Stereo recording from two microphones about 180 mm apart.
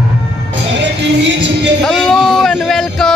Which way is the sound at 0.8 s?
75° right (ahead or behind).